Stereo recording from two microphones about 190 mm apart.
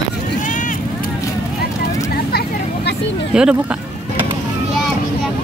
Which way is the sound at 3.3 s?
5° right (ahead or behind).